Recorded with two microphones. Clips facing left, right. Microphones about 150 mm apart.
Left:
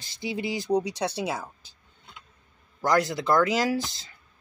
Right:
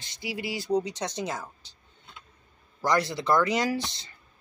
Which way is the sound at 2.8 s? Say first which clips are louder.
Left 2 dB; centre (ahead or behind).